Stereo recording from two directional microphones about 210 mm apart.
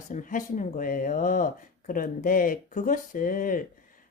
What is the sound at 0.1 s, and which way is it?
Speech, 40° left (ahead or behind).